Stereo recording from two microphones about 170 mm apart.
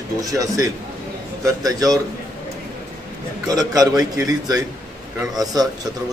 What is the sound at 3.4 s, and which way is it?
A man's voice, 20° right (ahead or behind).